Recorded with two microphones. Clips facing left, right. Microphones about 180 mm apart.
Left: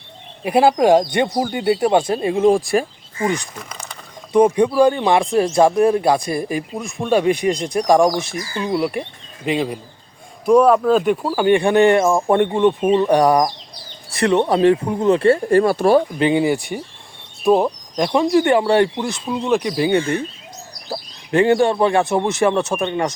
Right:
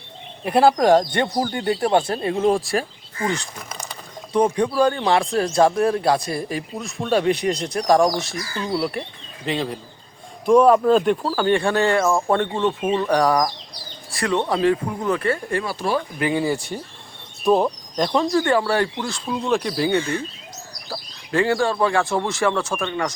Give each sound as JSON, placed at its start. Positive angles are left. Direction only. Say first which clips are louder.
{"t": 0.4, "sound": "speech", "louder": "left 2 dB", "side_deg": 10}
{"t": 15.6, "sound": "speech", "louder": "left 9 dB", "side_deg": 50}
{"t": 16.1, "sound": "speech", "louder": "left 5 dB", "side_deg": 20}
{"t": 19.2, "sound": "speech", "louder": "left 3 dB", "side_deg": 5}